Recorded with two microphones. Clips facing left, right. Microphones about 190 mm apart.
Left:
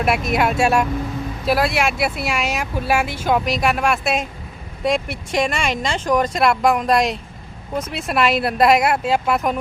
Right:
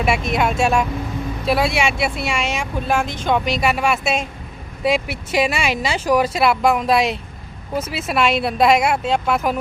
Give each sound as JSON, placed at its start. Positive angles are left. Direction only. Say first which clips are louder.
{"t": 0.0, "sound": "speech", "louder": "even", "side_deg": 0}